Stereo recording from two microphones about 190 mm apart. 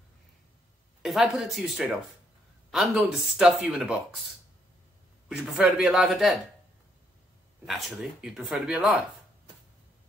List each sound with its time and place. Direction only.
1.0 s speech: centre (ahead or behind)
5.3 s speech: centre (ahead or behind)
7.6 s speech: centre (ahead or behind)